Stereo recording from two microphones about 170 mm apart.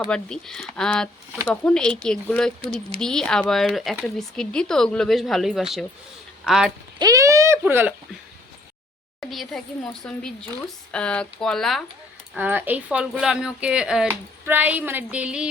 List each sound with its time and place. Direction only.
0.1 s speech: 5° left (ahead or behind)
7.0 s speech: 20° right (ahead or behind)
9.3 s speech: centre (ahead or behind)
10.9 s speech: 5° left (ahead or behind)
12.3 s speech: 10° right (ahead or behind)